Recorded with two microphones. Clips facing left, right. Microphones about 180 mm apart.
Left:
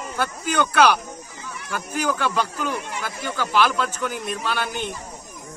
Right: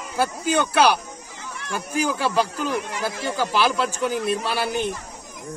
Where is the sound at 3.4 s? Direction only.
35° right (ahead or behind).